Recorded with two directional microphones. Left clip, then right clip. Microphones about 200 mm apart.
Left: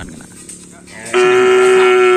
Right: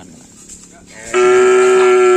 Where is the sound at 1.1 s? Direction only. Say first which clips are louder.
Even; 60° right (ahead or behind).